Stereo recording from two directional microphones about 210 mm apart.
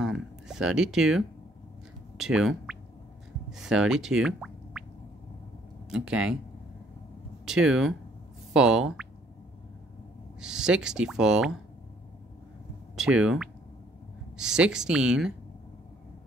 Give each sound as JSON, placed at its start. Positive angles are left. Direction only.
{"t": 0.0, "sound": "a sound", "side_deg": 0}
{"t": 3.5, "sound": "speech", "side_deg": -5}
{"t": 5.9, "sound": "speech", "side_deg": -5}
{"t": 7.4, "sound": "speech", "side_deg": -5}
{"t": 10.4, "sound": "speech", "side_deg": -5}
{"t": 12.9, "sound": "speech", "side_deg": -5}